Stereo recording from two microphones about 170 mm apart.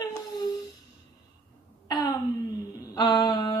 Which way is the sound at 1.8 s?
20° left (ahead or behind).